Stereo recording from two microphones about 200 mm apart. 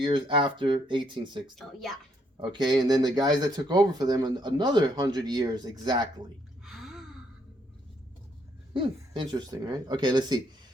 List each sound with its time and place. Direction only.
0.0 s speech: 25° right (ahead or behind)
1.5 s a woman's voice: centre (ahead or behind)
2.4 s speech: 20° right (ahead or behind)
6.7 s gasp: centre (ahead or behind)
8.7 s speech: 25° right (ahead or behind)